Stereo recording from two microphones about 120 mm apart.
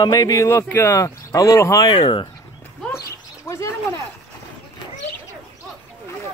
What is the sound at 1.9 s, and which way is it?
Speech, 45° left (ahead or behind).